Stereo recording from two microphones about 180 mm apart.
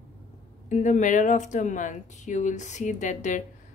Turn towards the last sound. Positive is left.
turn(degrees=40)  # may be behind; listen again after turning